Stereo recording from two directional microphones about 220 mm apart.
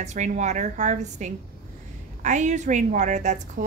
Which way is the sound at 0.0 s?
35° right (ahead or behind).